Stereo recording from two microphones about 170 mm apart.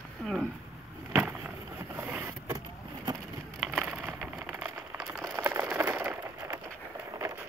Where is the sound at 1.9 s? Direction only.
10° right (ahead or behind).